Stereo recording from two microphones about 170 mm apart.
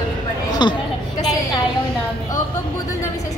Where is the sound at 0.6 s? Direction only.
25° left (ahead or behind).